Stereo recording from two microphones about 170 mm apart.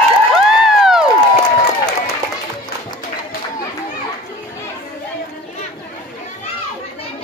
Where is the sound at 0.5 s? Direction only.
5° right (ahead or behind).